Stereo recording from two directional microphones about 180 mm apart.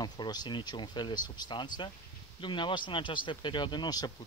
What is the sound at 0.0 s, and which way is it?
Speech, 25° left (ahead or behind).